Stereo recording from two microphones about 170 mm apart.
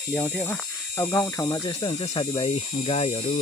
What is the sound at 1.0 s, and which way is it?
Speech, 15° left (ahead or behind).